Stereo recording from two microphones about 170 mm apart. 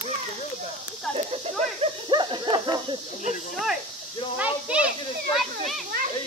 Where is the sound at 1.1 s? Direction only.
35° right (ahead or behind).